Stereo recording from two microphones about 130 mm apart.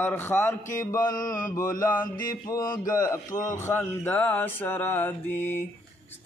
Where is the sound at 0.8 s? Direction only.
25° left (ahead or behind).